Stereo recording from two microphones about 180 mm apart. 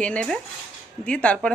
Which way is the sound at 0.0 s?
5° left (ahead or behind).